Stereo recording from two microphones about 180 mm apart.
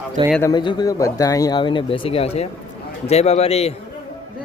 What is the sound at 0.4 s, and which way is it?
A man's voice, 25° left (ahead or behind).